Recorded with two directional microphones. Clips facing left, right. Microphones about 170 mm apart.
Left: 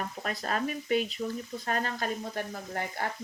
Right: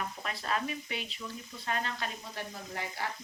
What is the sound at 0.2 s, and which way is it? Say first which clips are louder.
Speech: left 4 dB; 45° left (ahead or behind).